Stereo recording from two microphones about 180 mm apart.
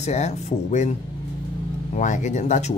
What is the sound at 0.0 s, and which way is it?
Speech, 40° left (ahead or behind).